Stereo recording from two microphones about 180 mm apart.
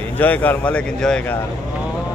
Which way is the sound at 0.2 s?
10° left (ahead or behind).